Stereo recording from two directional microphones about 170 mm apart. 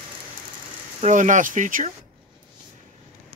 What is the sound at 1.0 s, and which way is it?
Speech, 45° right (ahead or behind).